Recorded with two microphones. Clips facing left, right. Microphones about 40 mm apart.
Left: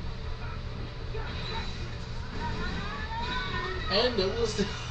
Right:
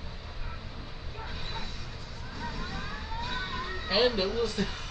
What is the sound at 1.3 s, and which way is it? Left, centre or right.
Speech, left.